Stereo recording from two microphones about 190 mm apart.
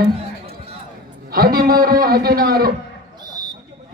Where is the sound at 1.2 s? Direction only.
50° right (ahead or behind).